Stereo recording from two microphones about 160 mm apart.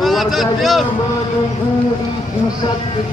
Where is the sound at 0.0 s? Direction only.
Centre (ahead or behind).